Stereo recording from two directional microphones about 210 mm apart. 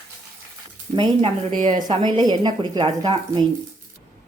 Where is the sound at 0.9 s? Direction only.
20° right (ahead or behind).